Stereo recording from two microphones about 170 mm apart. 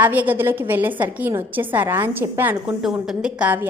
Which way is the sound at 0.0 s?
10° right (ahead or behind).